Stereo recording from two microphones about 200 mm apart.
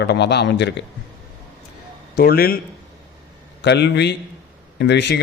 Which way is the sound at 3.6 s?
60° left (ahead or behind).